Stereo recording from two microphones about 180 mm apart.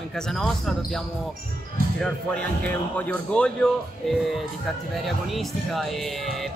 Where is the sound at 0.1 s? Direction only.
5° left (ahead or behind).